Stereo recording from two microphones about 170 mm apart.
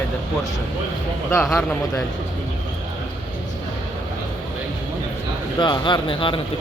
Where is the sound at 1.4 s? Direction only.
5° left (ahead or behind).